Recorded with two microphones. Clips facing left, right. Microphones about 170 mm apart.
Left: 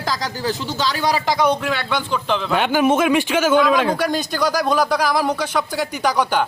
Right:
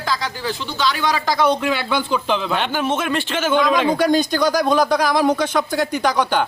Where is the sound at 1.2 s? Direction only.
15° left (ahead or behind).